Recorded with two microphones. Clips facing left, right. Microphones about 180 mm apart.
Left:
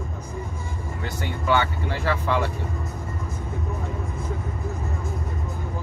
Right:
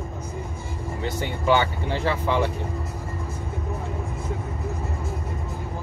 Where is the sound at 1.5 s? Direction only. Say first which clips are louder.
Right 2 dB; 20° right (ahead or behind).